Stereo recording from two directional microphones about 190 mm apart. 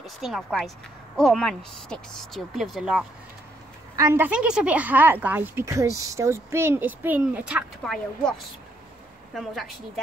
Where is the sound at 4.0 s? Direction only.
15° right (ahead or behind).